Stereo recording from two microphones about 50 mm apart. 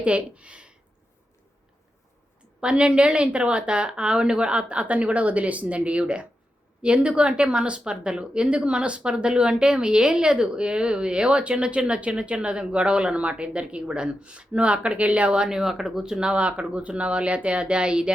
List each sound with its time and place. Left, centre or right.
0.0 s speech: right
2.6 s speech: right